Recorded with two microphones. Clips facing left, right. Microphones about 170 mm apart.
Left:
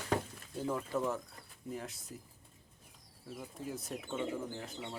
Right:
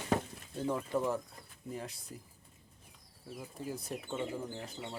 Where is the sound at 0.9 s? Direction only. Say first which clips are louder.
Right 2 dB; centre (ahead or behind).